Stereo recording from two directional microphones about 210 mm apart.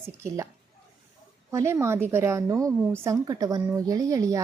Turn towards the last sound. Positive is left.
turn(degrees=-15)  # may be behind; listen again after turning